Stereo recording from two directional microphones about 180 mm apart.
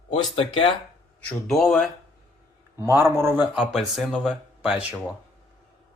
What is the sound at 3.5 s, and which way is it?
Speech, centre (ahead or behind).